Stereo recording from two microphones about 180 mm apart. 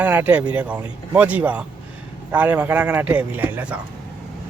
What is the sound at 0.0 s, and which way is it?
Speech, 10° right (ahead or behind).